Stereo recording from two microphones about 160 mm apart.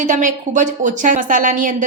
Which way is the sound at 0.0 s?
55° right (ahead or behind).